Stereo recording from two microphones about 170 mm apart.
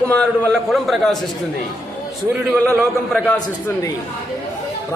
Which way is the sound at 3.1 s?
10° left (ahead or behind).